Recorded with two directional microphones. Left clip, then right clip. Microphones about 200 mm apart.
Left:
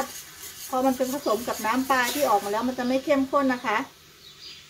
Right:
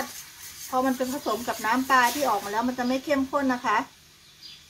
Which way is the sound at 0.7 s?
30° right (ahead or behind).